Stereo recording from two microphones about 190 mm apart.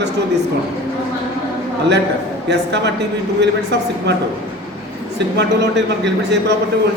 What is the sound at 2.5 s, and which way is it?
A man's voice, 65° right (ahead or behind).